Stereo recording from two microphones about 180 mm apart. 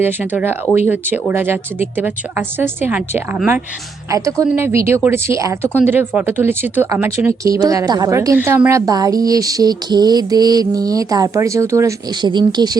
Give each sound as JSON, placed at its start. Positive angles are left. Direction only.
{"t": 0.0, "sound": "speech", "side_deg": -10}